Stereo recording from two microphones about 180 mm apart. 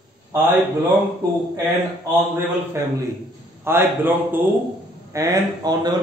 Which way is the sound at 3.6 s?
10° right (ahead or behind).